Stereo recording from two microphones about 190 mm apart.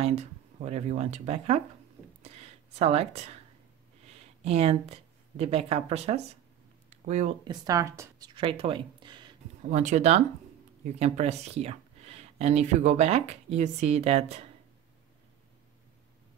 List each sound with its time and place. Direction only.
0.0 s speech: 35° right (ahead or behind)
2.8 s speech: 35° right (ahead or behind)
4.4 s speech: 35° right (ahead or behind)
7.4 s speech: 20° right (ahead or behind)
8.4 s speech: 30° right (ahead or behind)
9.7 s speech: 40° right (ahead or behind)